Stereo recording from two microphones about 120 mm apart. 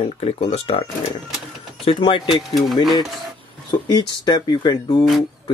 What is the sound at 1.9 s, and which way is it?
Speech, 45° left (ahead or behind).